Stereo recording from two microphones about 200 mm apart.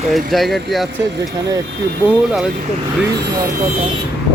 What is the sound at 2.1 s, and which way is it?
Speech, centre (ahead or behind).